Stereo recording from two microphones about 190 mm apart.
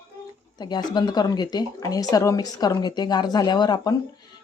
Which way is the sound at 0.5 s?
20° left (ahead or behind).